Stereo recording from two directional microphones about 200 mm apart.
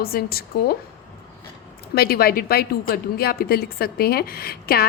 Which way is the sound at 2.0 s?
50° left (ahead or behind).